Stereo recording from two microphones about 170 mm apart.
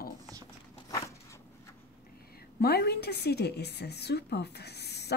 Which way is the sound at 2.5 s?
70° left (ahead or behind).